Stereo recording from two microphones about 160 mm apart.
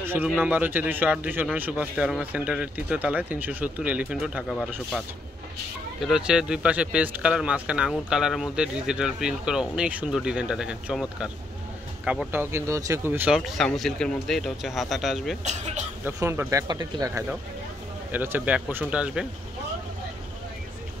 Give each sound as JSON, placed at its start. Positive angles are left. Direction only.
{"t": 0.0, "sound": "a man's voice", "side_deg": -15}
{"t": 15.4, "sound": "speech", "side_deg": -45}
{"t": 16.2, "sound": "speech", "side_deg": -15}
{"t": 18.1, "sound": "a man's voice", "side_deg": -10}